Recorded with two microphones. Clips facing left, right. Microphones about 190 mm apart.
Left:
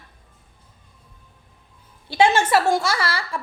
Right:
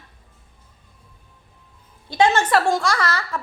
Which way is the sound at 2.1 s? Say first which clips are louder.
Even; 10° left (ahead or behind).